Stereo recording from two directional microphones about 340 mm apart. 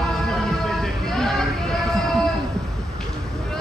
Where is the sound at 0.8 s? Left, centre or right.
Centre.